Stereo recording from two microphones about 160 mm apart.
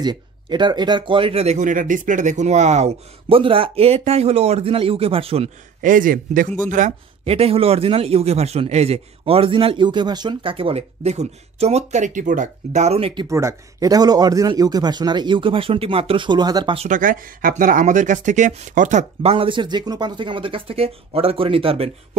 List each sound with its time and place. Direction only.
0.0 s a man's voice: 30° right (ahead or behind)
5.8 s speech: 55° right (ahead or behind)
7.2 s a man's voice: 40° right (ahead or behind)
13.3 s speech: 20° right (ahead or behind)
16.7 s speech: 50° right (ahead or behind)
19.3 s a man's voice: 30° right (ahead or behind)